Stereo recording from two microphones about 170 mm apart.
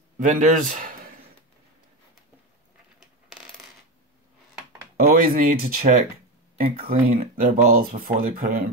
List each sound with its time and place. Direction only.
0.2 s speech: 50° right (ahead or behind)
3.0 s coin: 5° right (ahead or behind)
4.9 s speech: 55° right (ahead or behind)
7.1 s speech: 50° right (ahead or behind)